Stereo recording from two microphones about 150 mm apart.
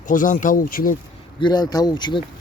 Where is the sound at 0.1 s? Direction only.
60° left (ahead or behind).